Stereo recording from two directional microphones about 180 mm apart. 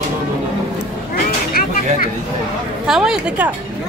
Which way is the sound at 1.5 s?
50° left (ahead or behind).